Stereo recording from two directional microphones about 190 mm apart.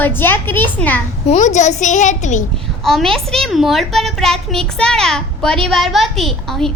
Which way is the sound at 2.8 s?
Centre (ahead or behind).